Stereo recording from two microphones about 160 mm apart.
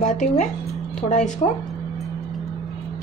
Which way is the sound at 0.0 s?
50° left (ahead or behind).